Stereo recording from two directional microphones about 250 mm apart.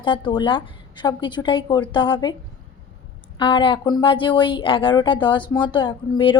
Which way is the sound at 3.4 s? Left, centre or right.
Centre.